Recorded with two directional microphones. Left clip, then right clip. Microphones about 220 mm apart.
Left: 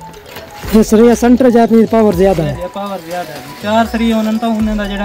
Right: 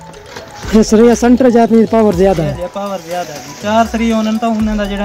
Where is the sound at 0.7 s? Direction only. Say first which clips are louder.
Even; centre (ahead or behind).